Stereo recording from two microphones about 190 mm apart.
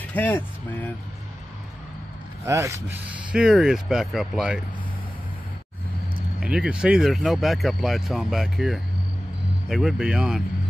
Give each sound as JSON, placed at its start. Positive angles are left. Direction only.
{"t": 0.0, "sound": "speech", "side_deg": 10}
{"t": 2.4, "sound": "rub", "side_deg": -15}
{"t": 3.3, "sound": "speech", "side_deg": -5}
{"t": 6.4, "sound": "speech", "side_deg": -5}